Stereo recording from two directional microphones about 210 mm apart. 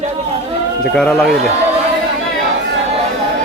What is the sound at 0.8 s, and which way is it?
Speech, 5° left (ahead or behind).